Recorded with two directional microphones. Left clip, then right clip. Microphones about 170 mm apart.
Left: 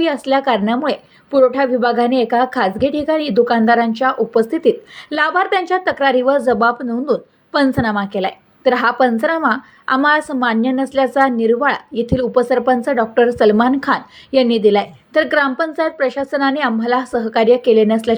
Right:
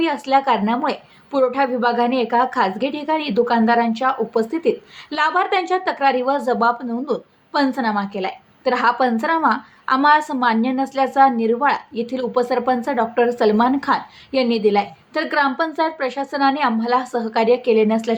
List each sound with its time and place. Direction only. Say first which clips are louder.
0.0 s a woman's voice: left 2 dB; 20° left (ahead or behind)